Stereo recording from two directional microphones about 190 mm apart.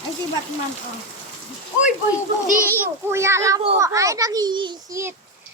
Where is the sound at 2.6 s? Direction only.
15° right (ahead or behind).